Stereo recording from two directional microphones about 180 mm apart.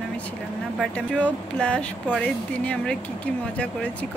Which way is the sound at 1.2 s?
5° left (ahead or behind).